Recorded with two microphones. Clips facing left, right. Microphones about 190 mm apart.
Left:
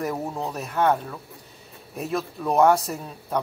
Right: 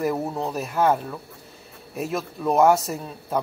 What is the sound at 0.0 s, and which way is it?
Speech, 5° right (ahead or behind).